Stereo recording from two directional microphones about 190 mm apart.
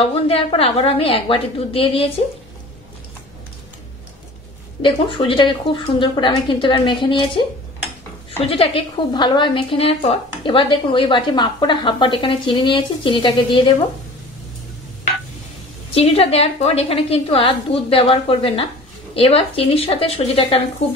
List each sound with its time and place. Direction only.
0.0 s a woman's voice: 30° left (ahead or behind)
4.8 s a woman's voice: 25° left (ahead or behind)
15.9 s a woman's voice: 30° left (ahead or behind)